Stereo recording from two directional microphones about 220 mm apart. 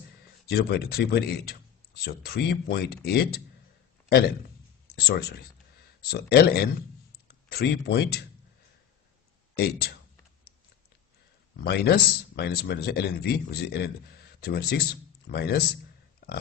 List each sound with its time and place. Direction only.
0.5 s speech: 45° left (ahead or behind)
4.9 s speech: 45° left (ahead or behind)
9.6 s speech: 45° left (ahead or behind)
11.6 s speech: 45° left (ahead or behind)